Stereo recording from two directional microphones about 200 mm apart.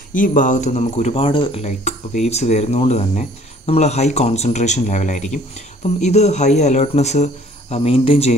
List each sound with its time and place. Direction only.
0.1 s speech: 40° left (ahead or behind)